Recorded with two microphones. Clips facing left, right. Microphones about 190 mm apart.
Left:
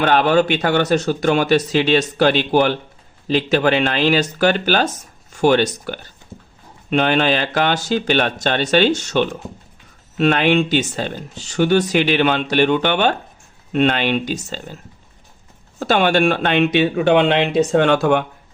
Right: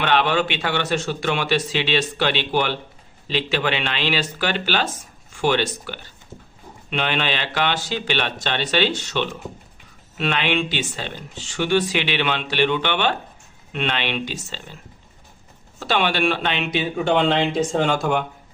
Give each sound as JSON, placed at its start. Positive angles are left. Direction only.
{"t": 0.0, "sound": "speech", "side_deg": 45}
{"t": 15.8, "sound": "speech", "side_deg": 45}